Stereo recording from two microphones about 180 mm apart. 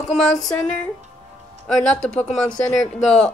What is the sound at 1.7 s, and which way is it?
Speech, 5° left (ahead or behind).